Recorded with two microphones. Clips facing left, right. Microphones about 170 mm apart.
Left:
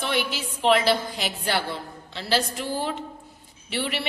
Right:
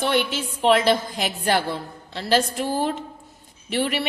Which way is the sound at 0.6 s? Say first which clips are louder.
Right 2 dB; 45° right (ahead or behind).